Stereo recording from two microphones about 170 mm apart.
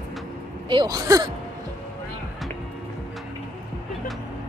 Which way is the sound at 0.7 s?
25° right (ahead or behind).